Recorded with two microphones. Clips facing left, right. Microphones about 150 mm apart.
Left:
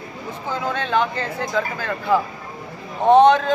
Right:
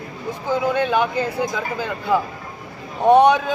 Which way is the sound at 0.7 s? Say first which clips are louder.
Even; 10° right (ahead or behind).